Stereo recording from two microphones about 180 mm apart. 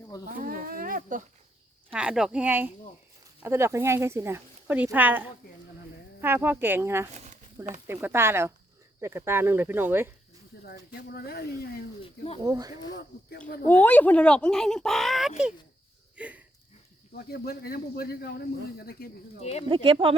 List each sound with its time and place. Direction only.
0.3 s a sound: 55° right (ahead or behind)
1.9 s speech: 5° right (ahead or behind)
7.1 s a sound: 40° right (ahead or behind)
7.9 s speech: 15° right (ahead or behind)
10.7 s speech: 60° left (ahead or behind)
12.0 s speech: 35° left (ahead or behind)
12.5 s speech: 20° right (ahead or behind)
12.9 s speech: 60° left (ahead or behind)
13.7 s speech: 10° left (ahead or behind)
16.1 s a sound: 10° right (ahead or behind)
17.1 s speech: 60° left (ahead or behind)
19.4 s speech: 35° left (ahead or behind)
19.6 s speech: 30° right (ahead or behind)